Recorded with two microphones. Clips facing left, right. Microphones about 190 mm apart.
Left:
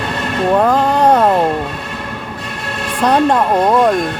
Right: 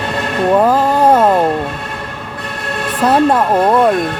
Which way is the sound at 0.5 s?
5° right (ahead or behind).